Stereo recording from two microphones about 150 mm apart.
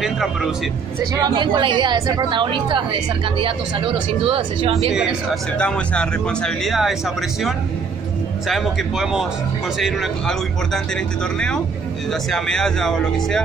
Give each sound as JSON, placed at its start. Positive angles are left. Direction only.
{"t": 0.0, "sound": "speech", "side_deg": -5}
{"t": 1.1, "sound": "a woman's voice", "side_deg": -30}
{"t": 4.9, "sound": "speech", "side_deg": -5}
{"t": 5.6, "sound": "speech", "side_deg": 5}
{"t": 8.5, "sound": "speech", "side_deg": 0}